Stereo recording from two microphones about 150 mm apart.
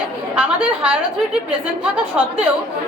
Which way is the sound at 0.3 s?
10° right (ahead or behind).